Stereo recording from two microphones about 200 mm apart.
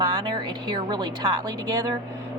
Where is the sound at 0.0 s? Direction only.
20° right (ahead or behind).